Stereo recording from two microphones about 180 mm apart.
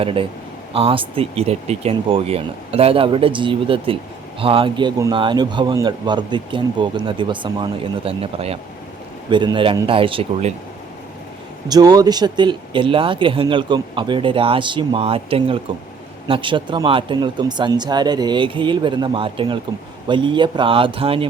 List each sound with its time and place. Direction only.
0.0 s speech: 30° right (ahead or behind)
11.7 s speech: 20° right (ahead or behind)